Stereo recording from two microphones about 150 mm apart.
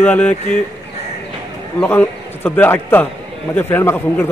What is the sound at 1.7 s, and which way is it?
A man's voice, 15° left (ahead or behind).